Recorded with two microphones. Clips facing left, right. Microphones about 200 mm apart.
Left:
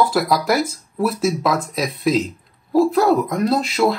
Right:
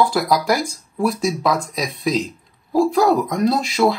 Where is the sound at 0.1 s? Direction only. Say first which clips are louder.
Even; centre (ahead or behind).